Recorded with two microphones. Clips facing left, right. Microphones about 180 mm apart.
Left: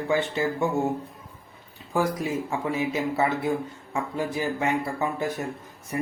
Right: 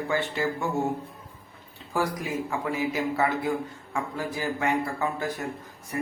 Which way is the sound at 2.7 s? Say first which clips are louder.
Left 1 dB; 20° left (ahead or behind).